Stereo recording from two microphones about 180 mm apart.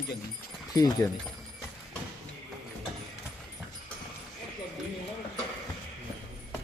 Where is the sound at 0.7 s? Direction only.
20° left (ahead or behind).